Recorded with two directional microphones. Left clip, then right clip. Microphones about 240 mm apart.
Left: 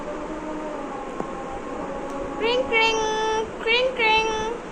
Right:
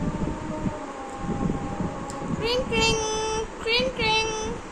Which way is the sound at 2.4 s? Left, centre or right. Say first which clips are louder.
Left 4 dB; centre.